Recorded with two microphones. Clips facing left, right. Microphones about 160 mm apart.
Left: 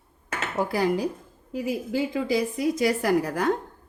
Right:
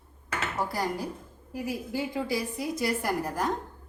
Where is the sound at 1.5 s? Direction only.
90° left.